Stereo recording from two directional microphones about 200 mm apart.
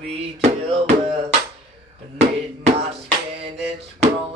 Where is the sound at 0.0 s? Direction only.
30° right (ahead or behind).